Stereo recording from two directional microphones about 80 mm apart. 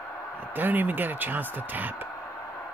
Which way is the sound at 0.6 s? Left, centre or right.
Right.